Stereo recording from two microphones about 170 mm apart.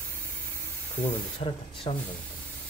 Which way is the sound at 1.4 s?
30° left (ahead or behind).